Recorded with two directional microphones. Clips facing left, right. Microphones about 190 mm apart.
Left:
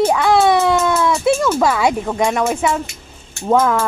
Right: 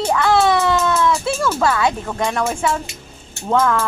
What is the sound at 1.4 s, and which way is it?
Speech, 15° left (ahead or behind).